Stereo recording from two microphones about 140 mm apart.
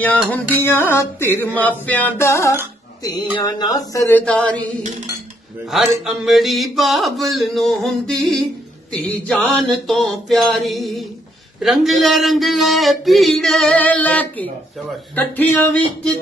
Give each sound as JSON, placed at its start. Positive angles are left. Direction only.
{"t": 0.3, "sound": "music", "side_deg": 15}
{"t": 3.3, "sound": "speech", "side_deg": 30}
{"t": 4.2, "sound": "music", "side_deg": 10}
{"t": 5.7, "sound": "a man's voice", "side_deg": 0}
{"t": 15.1, "sound": "music", "side_deg": 10}